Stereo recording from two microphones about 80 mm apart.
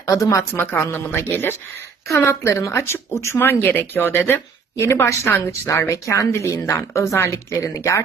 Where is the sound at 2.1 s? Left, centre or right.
Left.